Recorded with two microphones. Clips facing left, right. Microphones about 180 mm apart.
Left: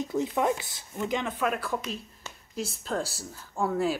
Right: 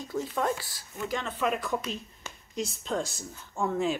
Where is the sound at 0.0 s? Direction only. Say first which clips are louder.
Left 3 dB; 20° left (ahead or behind).